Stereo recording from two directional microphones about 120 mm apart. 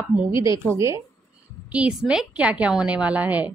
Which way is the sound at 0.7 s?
25° right (ahead or behind).